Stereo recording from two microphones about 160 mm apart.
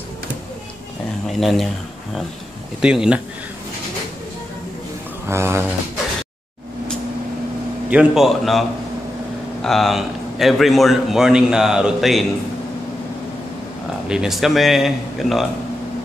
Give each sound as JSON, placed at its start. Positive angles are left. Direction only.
{"t": 1.4, "sound": "a man's voice", "side_deg": 0}
{"t": 2.8, "sound": "a man's voice", "side_deg": -5}
{"t": 5.3, "sound": "speech", "side_deg": -15}
{"t": 7.9, "sound": "a man's voice", "side_deg": -5}
{"t": 14.0, "sound": "a man's voice", "side_deg": -5}